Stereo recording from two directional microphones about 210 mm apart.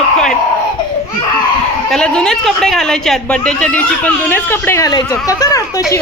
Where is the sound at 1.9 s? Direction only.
5° left (ahead or behind).